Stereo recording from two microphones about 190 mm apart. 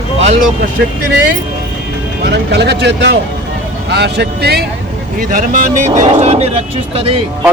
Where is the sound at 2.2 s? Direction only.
60° right (ahead or behind).